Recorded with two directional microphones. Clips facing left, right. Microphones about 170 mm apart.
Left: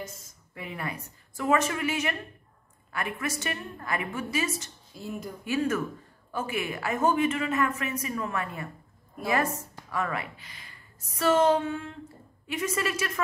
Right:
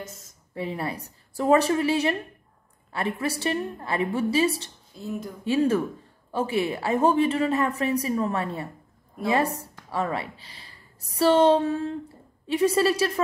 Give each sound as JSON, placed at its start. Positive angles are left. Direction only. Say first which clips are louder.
{"t": 0.6, "sound": "a woman's voice", "louder": "right 6 dB", "side_deg": -30}
{"t": 4.9, "sound": "speech", "louder": "right 4 dB", "side_deg": 0}
{"t": 5.4, "sound": "a woman's voice", "louder": "right 5 dB", "side_deg": -30}